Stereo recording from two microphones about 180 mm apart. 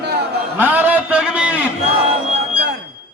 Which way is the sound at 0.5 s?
10° right (ahead or behind).